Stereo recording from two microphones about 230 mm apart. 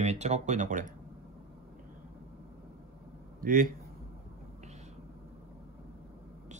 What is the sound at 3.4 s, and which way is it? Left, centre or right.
Speech, right.